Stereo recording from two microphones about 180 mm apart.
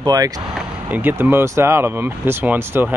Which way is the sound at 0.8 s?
10° right (ahead or behind).